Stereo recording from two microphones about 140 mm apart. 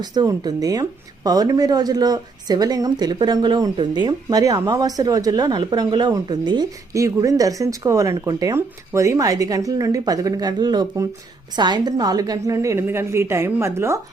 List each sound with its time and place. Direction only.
0.0 s speech: 30° right (ahead or behind)